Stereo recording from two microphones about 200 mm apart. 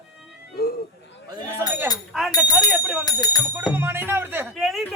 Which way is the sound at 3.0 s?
20° left (ahead or behind).